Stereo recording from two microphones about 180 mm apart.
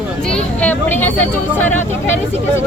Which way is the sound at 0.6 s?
10° left (ahead or behind).